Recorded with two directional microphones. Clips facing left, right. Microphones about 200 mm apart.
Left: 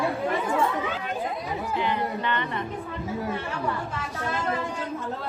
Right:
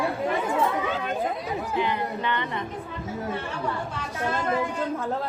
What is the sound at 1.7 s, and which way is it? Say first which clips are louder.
Speech: even; 15° right (ahead or behind).